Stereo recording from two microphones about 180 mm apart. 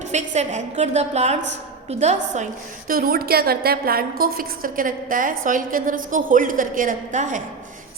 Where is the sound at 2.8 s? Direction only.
55° right (ahead or behind).